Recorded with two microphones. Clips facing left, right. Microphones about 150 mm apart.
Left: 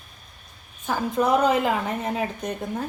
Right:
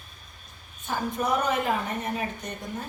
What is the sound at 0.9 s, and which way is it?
Speech, 90° left.